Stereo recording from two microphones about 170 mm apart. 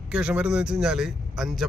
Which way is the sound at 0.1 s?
5° right (ahead or behind).